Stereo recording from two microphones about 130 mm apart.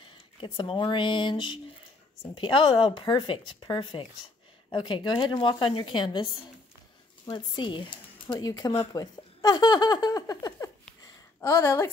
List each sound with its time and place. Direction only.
0.4 s speech: 40° left (ahead or behind)
7.2 s speech: 35° left (ahead or behind)
8.9 s a sound: 30° left (ahead or behind)
11.4 s a woman's voice: 20° left (ahead or behind)